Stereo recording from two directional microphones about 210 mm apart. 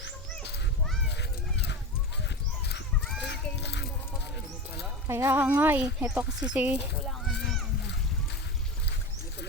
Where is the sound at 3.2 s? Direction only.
55° left (ahead or behind).